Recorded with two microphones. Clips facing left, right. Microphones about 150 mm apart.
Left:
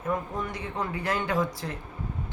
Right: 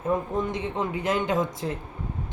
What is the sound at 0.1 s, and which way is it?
A man's voice, 20° right (ahead or behind).